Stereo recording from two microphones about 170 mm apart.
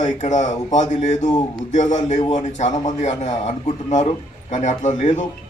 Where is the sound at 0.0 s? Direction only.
45° left (ahead or behind).